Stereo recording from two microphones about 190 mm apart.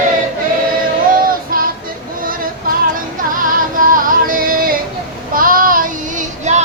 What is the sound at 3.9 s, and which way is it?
Music, 50° right (ahead or behind).